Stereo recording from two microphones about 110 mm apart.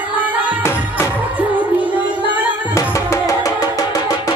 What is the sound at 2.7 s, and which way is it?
Music, 30° left (ahead or behind).